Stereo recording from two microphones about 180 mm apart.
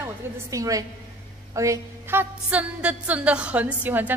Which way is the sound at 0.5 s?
20° right (ahead or behind).